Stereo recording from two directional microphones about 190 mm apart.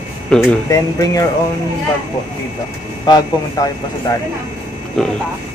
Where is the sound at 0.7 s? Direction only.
15° left (ahead or behind).